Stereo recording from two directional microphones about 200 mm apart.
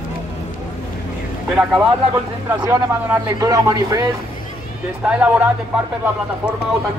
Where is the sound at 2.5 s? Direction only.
15° right (ahead or behind).